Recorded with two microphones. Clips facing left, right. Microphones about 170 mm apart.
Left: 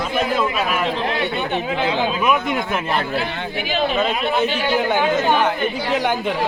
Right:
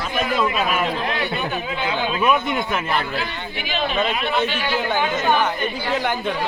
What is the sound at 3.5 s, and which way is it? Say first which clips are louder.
Speech: left 3 dB; 40° left (ahead or behind).